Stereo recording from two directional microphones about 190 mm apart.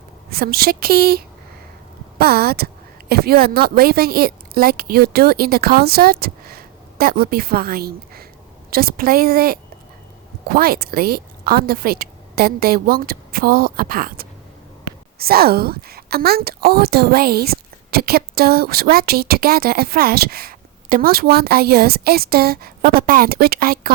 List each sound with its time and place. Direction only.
0.3 s a woman's voice: 50° right (ahead or behind)